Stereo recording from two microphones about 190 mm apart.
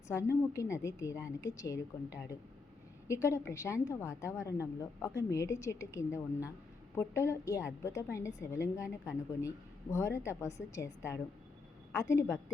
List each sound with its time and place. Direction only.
0.1 s a woman's voice: 15° left (ahead or behind)
3.1 s a woman's voice: 15° left (ahead or behind)